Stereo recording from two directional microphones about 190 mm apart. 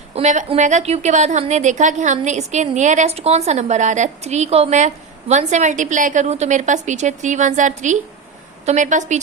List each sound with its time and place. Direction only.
0.1 s a woman's voice: 35° right (ahead or behind)